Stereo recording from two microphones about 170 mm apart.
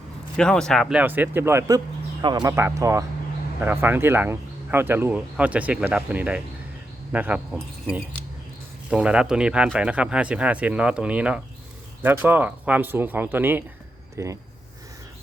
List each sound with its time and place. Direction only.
0.3 s speech: 5° left (ahead or behind); by 14.3 s 15° right (ahead or behind)